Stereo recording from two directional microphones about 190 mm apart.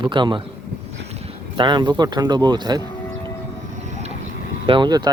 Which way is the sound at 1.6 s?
25° right (ahead or behind).